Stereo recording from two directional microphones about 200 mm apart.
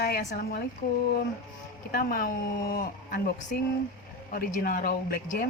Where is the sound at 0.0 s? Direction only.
50° left (ahead or behind).